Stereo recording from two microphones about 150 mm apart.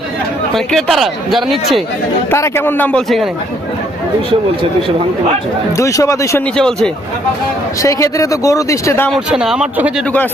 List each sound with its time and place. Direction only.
0.5 s speech: centre (ahead or behind)
2.3 s a man's voice: 15° left (ahead or behind)
5.7 s speech: 20° left (ahead or behind)
6.6 s speech: 5° left (ahead or behind)
7.8 s speech: 20° left (ahead or behind)
9.0 s speech: centre (ahead or behind)